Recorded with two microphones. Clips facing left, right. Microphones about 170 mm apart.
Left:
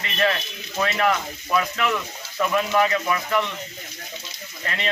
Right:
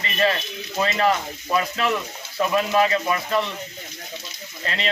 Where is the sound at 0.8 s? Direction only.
25° right (ahead or behind).